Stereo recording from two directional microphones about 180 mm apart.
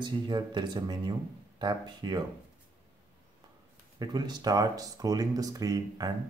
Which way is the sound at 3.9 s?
20° right (ahead or behind).